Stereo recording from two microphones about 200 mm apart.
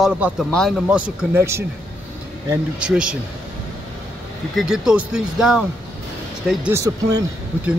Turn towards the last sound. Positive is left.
turn(degrees=-15)  # may be behind; listen again after turning